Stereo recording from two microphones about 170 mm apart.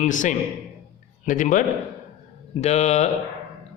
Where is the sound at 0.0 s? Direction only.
50° left (ahead or behind).